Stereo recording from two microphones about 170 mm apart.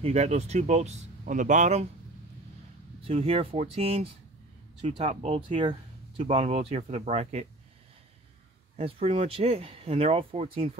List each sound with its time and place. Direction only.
0.0 s speech: 40° right (ahead or behind)
3.0 s speech: 35° right (ahead or behind)
8.7 s speech: 35° right (ahead or behind)